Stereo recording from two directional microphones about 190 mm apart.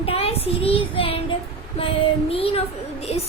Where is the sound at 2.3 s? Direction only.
30° left (ahead or behind).